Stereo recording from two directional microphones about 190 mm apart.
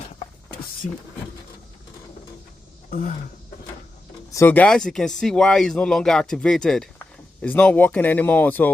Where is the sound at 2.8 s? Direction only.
45° left (ahead or behind).